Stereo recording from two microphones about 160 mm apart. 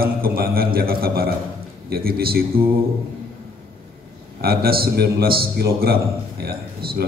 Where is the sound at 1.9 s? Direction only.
70° right (ahead or behind).